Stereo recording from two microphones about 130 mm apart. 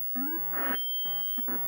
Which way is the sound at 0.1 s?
25° left (ahead or behind).